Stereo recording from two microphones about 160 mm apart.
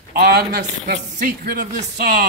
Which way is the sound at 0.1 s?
85° right.